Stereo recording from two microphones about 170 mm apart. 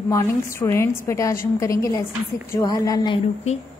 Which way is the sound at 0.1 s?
15° left (ahead or behind).